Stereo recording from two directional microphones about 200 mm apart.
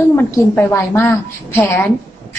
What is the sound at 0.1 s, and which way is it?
A woman's voice, 10° left (ahead or behind).